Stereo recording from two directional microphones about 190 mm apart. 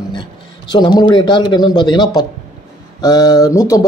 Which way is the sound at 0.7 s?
20° left (ahead or behind).